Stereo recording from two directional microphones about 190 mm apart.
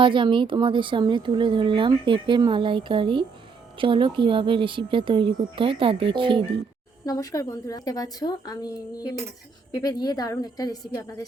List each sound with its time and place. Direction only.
0.0 s speech: 25° right (ahead or behind)
7.0 s a woman's voice: 20° left (ahead or behind)